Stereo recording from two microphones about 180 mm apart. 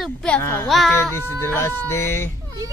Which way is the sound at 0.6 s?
Centre (ahead or behind).